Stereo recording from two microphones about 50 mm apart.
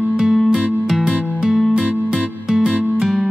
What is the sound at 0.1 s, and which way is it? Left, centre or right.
Music, centre.